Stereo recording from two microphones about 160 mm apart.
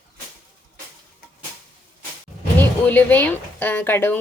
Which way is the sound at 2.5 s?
10° left (ahead or behind).